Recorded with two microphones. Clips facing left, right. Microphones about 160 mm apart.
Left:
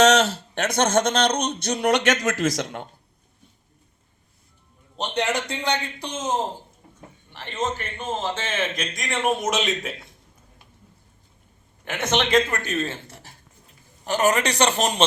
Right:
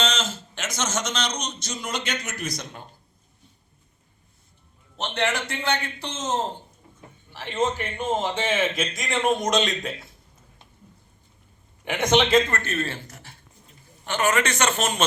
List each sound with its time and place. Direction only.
0.0 s speech: 70° left (ahead or behind); by 2.8 s 90° left
4.9 s a man's voice: 15° left (ahead or behind)
7.3 s a man's voice: 10° right (ahead or behind)
11.9 s a man's voice: 15° right (ahead or behind)
12.5 s a man's voice: 15° left (ahead or behind)
13.1 s a man's voice: 30° left (ahead or behind)